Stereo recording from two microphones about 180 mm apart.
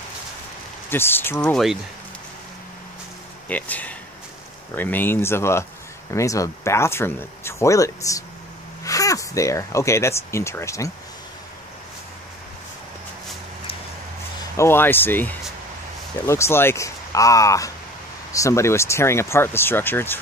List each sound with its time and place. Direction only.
0.8 s speech: 10° left (ahead or behind)
1.5 s speech: centre (ahead or behind)
3.4 s speech: 10° left (ahead or behind)
14.6 s speech: 10° left (ahead or behind)